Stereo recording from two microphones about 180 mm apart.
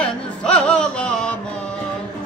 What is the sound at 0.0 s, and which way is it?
Music, 5° left (ahead or behind).